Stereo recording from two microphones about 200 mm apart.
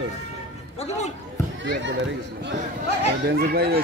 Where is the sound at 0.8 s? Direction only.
35° left (ahead or behind).